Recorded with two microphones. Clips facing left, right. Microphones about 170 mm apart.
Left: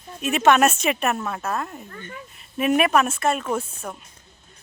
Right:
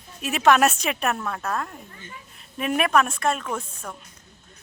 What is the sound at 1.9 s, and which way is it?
Speech, 60° left (ahead or behind).